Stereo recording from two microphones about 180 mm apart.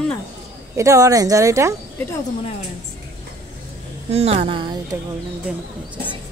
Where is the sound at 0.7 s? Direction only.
15° right (ahead or behind).